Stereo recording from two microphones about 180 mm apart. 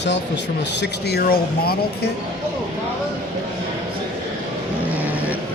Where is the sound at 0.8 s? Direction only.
65° left (ahead or behind).